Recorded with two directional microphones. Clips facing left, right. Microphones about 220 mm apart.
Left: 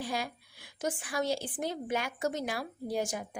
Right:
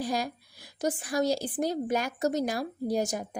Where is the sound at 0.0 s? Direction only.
40° right (ahead or behind).